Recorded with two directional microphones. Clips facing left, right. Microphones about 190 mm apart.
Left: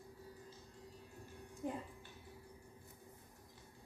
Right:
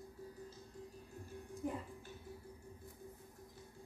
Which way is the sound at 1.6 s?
20° left (ahead or behind).